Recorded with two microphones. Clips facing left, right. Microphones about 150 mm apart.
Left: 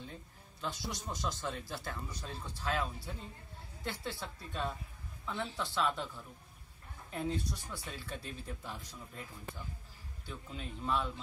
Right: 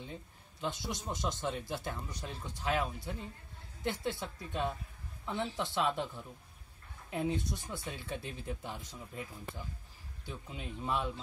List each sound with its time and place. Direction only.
0.0 s speech: 20° right (ahead or behind)
10.2 s speech: 15° right (ahead or behind)